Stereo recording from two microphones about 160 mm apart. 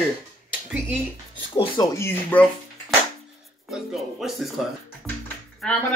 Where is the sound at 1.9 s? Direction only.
15° left (ahead or behind).